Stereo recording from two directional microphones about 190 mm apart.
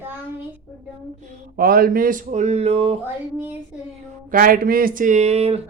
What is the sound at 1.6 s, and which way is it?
Speech, 50° right (ahead or behind).